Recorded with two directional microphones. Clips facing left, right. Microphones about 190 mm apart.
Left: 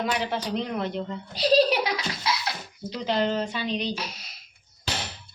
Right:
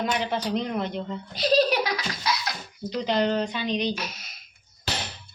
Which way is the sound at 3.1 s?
Centre (ahead or behind).